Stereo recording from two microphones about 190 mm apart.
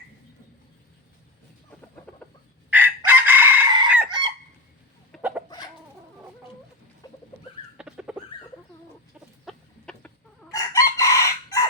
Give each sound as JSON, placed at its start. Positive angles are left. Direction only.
{"t": 2.6, "sound": "chicken", "side_deg": -10}
{"t": 5.1, "sound": "chicken", "side_deg": 0}
{"t": 7.0, "sound": "rodents", "side_deg": 20}
{"t": 7.8, "sound": "chicken", "side_deg": -5}
{"t": 9.5, "sound": "chicken", "side_deg": 5}
{"t": 10.5, "sound": "chicken", "side_deg": 15}